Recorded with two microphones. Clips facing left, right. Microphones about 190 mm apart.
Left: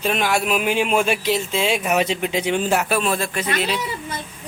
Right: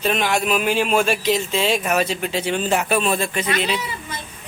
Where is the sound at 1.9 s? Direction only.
20° left (ahead or behind); by 3.8 s centre (ahead or behind).